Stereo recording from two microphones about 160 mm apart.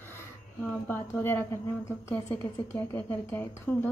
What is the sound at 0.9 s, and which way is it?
A woman's voice, 15° left (ahead or behind).